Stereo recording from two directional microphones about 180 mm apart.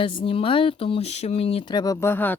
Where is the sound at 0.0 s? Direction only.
30° left (ahead or behind).